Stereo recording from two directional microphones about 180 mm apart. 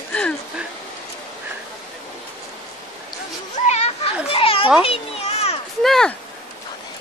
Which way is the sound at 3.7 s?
40° left (ahead or behind).